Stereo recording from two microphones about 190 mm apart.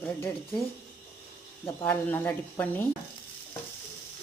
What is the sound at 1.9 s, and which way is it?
Speech, 10° left (ahead or behind).